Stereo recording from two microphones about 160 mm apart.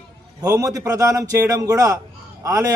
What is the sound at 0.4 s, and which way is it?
A man's voice, 20° right (ahead or behind).